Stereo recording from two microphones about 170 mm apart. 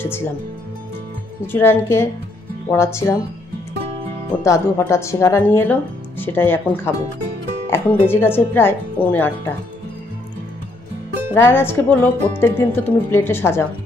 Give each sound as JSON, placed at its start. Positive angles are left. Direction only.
{"t": 0.0, "sound": "speech", "side_deg": 15}
{"t": 1.5, "sound": "speech", "side_deg": 15}
{"t": 4.4, "sound": "speech", "side_deg": 15}
{"t": 11.3, "sound": "speech", "side_deg": 15}